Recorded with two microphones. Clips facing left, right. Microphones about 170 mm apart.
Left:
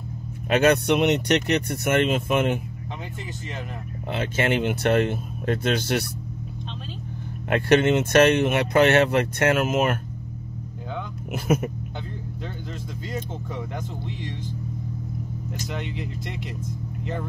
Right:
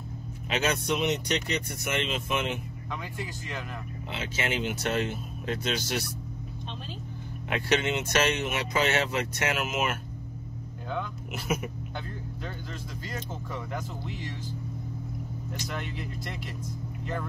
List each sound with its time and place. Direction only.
0.5 s speech: 60° left (ahead or behind)
4.1 s speech: 55° left (ahead or behind)
7.4 s speech: 55° left (ahead or behind)
11.3 s speech: 50° left (ahead or behind)